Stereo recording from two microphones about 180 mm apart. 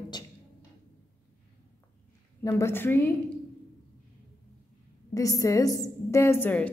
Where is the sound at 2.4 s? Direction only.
15° left (ahead or behind).